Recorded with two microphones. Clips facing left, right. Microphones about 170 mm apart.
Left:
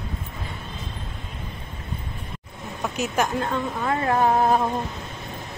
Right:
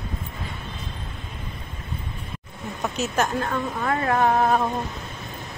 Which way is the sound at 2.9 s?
15° left (ahead or behind).